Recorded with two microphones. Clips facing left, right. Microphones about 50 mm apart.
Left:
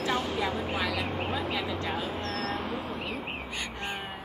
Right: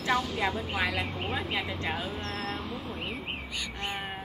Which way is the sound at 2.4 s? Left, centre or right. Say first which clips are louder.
Left 3 dB; left.